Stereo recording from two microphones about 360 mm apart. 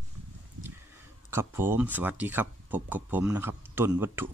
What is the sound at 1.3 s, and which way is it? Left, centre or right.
Speech, centre.